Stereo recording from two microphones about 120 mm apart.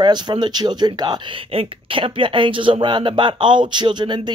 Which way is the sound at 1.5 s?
45° right (ahead or behind).